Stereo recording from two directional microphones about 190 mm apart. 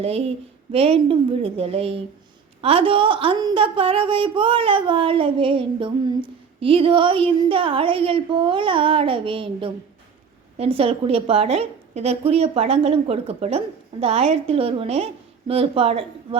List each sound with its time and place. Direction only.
0.0 s a woman's voice: 30° right (ahead or behind)